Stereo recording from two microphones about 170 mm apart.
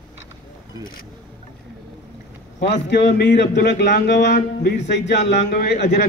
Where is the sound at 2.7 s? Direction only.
85° left.